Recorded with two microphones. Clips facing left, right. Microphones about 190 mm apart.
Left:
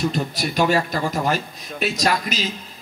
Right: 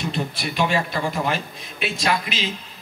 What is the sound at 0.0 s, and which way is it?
A man's voice, 40° left (ahead or behind).